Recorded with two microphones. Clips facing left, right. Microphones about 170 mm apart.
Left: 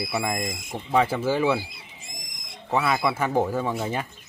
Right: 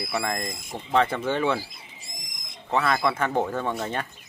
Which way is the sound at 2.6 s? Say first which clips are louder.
Even; 10° left (ahead or behind).